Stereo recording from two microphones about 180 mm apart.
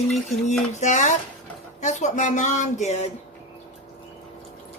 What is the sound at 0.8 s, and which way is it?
Speech, 40° left (ahead or behind).